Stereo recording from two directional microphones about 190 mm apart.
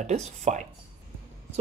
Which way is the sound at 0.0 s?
35° right (ahead or behind).